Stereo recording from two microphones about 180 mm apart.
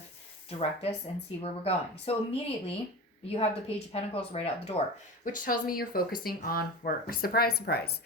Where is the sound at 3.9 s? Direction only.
35° left (ahead or behind).